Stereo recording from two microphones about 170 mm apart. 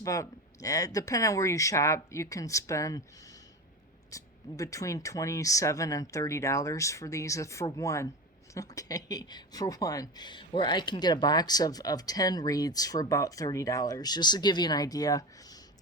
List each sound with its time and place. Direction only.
0.0 s speech: 20° left (ahead or behind)
4.1 s speech: 20° left (ahead or behind)